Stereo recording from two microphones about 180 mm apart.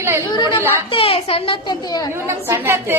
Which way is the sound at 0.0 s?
15° right (ahead or behind).